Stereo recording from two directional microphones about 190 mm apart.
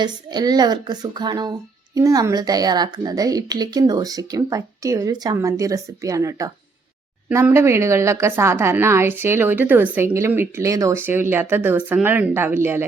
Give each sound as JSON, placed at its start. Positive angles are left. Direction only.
{"t": 0.0, "sound": "a woman's voice", "side_deg": -20}